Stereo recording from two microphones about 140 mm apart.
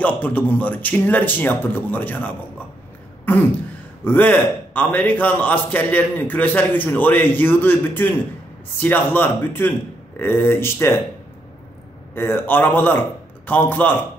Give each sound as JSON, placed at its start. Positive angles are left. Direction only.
{"t": 0.0, "sound": "a man's voice", "side_deg": 10}
{"t": 4.0, "sound": "a man's voice", "side_deg": 10}
{"t": 12.2, "sound": "a man's voice", "side_deg": 15}